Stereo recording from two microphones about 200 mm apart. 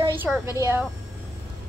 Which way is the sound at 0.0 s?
10° right (ahead or behind).